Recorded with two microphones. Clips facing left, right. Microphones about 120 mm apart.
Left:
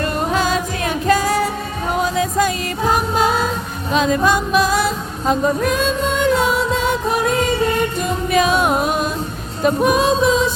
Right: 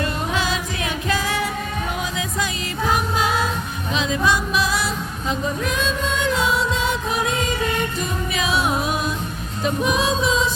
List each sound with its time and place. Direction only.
0.0 s music: 45° left (ahead or behind)